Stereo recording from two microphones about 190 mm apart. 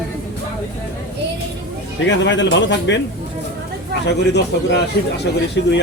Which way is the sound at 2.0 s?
70° left (ahead or behind).